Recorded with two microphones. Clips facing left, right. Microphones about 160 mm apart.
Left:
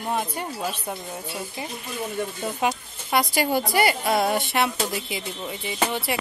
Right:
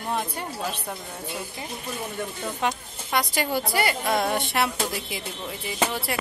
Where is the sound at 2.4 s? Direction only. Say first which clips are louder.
Left 1 dB; 10° left (ahead or behind).